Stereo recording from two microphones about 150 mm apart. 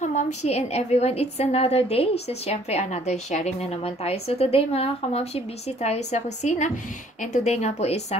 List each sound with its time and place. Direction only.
0.0 s speech: 50° left (ahead or behind)